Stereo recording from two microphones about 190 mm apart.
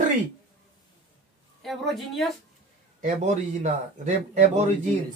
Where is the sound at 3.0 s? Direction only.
40° right (ahead or behind).